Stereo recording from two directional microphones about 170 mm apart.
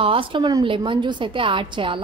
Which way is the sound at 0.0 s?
30° right (ahead or behind).